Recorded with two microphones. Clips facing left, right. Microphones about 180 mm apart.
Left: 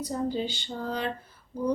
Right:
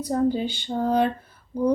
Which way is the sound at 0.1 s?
55° right (ahead or behind).